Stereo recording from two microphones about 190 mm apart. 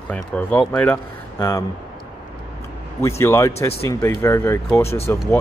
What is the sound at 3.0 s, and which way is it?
Speech, 15° left (ahead or behind).